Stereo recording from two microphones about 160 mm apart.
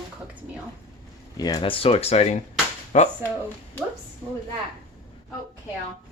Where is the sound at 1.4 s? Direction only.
25° left (ahead or behind); by 3.1 s 45° left (ahead or behind).